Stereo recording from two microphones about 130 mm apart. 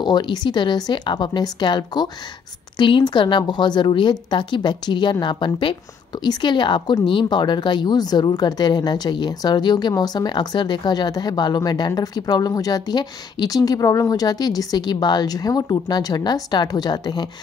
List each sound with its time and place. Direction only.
0.0 s speech: 35° left (ahead or behind)